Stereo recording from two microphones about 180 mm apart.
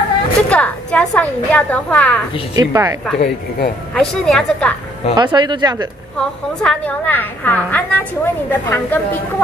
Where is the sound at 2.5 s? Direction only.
20° right (ahead or behind).